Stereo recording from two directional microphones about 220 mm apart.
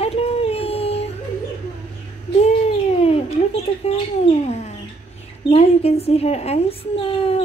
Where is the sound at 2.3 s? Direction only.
30° left (ahead or behind).